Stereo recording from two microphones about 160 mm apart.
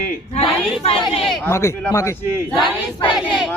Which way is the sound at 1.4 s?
15° left (ahead or behind).